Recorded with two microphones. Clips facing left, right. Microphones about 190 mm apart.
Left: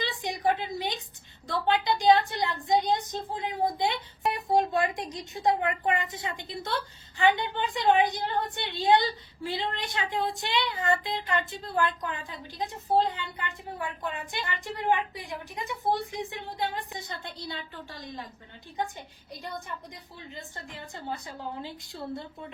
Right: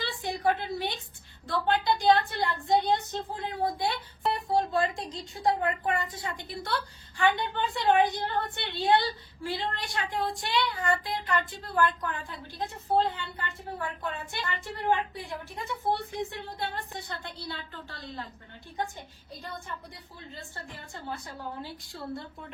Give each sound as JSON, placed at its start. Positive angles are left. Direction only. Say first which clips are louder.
{"t": 0.2, "sound": "a woman's voice", "louder": "right 1 dB", "side_deg": 15}
{"t": 19.3, "sound": "a woman's voice", "louder": "left 2 dB", "side_deg": 15}
{"t": 20.9, "sound": "speech", "louder": "left 2 dB", "side_deg": 20}